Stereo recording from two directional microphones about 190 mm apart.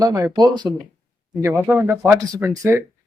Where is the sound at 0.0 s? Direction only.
20° right (ahead or behind).